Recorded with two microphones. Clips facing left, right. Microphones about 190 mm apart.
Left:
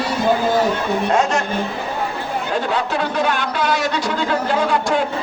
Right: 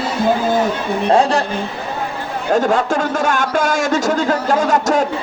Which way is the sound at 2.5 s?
45° right (ahead or behind).